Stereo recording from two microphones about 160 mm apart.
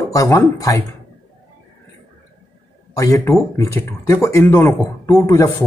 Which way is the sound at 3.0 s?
20° left (ahead or behind).